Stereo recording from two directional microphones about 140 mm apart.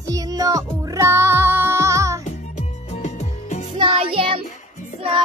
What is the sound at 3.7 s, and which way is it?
Music, 35° right (ahead or behind).